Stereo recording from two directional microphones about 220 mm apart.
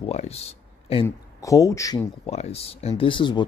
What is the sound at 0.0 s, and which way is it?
Speech, 30° left (ahead or behind).